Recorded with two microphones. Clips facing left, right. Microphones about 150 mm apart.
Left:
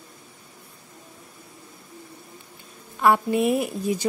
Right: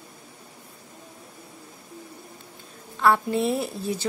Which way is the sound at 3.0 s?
15° left (ahead or behind).